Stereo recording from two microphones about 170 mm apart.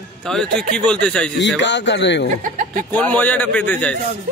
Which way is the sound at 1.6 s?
90° left.